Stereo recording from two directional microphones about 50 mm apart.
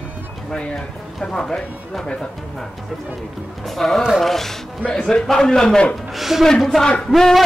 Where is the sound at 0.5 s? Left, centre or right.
Centre.